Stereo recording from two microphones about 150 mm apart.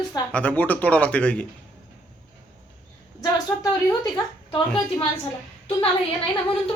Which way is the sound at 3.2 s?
25° left (ahead or behind).